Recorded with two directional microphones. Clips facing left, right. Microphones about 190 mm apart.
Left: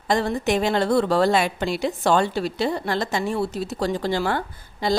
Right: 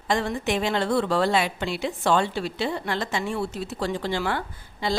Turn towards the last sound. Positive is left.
turn(degrees=40)  # may be behind; listen again after turning